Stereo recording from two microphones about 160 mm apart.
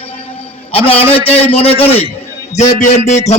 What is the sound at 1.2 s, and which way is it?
A man's voice, 35° left (ahead or behind).